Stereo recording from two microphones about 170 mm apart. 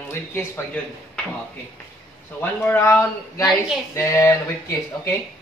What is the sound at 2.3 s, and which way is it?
Speech, 15° left (ahead or behind).